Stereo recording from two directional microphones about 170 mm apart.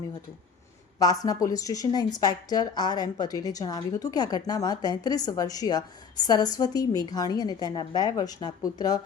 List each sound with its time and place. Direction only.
0.9 s a woman's voice: 20° left (ahead or behind)